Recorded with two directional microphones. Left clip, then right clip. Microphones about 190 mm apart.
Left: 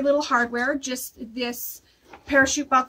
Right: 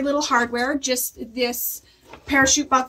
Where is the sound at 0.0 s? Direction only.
25° left (ahead or behind).